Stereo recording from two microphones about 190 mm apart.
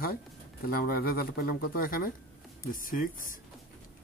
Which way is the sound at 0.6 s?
50° left (ahead or behind).